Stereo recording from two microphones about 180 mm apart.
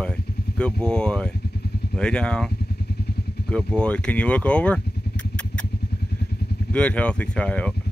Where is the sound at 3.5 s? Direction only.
5° left (ahead or behind).